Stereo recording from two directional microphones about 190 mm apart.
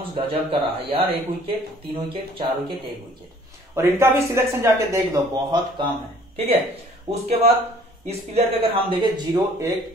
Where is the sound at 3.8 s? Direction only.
15° right (ahead or behind).